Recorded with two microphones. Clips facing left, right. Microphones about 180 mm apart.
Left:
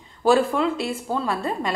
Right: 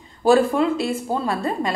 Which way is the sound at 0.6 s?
45° right (ahead or behind).